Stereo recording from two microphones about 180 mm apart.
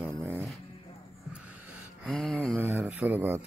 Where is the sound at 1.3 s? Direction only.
Centre (ahead or behind).